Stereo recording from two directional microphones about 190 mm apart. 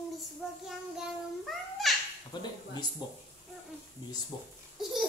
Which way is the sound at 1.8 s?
Centre (ahead or behind).